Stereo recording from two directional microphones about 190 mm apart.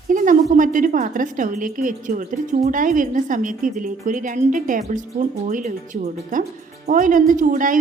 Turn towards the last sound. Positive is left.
turn(degrees=-45)  # may be behind; listen again after turning